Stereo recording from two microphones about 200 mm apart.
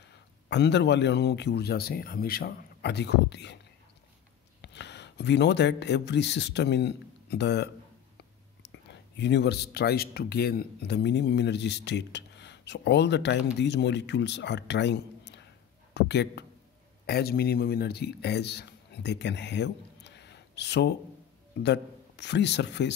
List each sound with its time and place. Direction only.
0.5 s speech: 60° left (ahead or behind)
4.6 s speech: 60° left (ahead or behind)